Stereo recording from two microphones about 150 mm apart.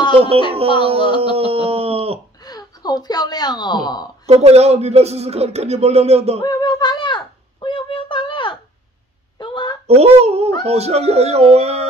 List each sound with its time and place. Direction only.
0.1 s music: 40° right (ahead or behind)
1.3 s a sound: 40° right (ahead or behind)
2.4 s a woman's voice: 25° left (ahead or behind)
4.3 s speech: 45° right (ahead or behind)
6.4 s a sound: 30° left (ahead or behind)
9.8 s speech: 45° right (ahead or behind)